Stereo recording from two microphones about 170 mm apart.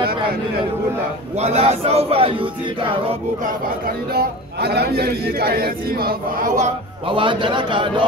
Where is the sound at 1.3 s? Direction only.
35° right (ahead or behind).